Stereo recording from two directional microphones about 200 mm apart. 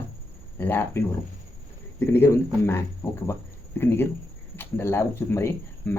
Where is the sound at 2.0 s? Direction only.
10° left (ahead or behind).